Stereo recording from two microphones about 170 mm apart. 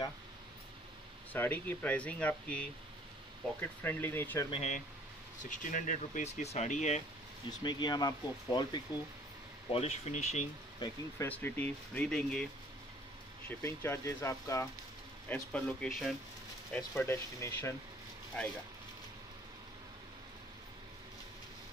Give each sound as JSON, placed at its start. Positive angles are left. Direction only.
{"t": 1.3, "sound": "speech", "side_deg": 10}
{"t": 4.5, "sound": "speech", "side_deg": 40}
{"t": 7.6, "sound": "speech", "side_deg": 25}
{"t": 9.7, "sound": "speech", "side_deg": 40}
{"t": 11.2, "sound": "speech", "side_deg": 10}
{"t": 13.5, "sound": "speech", "side_deg": 15}